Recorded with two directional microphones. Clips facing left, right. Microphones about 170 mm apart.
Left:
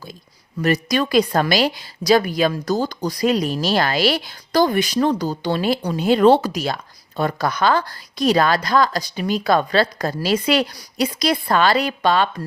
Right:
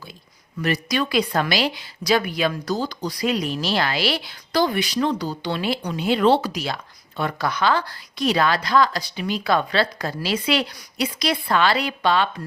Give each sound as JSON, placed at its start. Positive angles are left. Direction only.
{"t": 0.6, "sound": "a woman's voice", "side_deg": 45}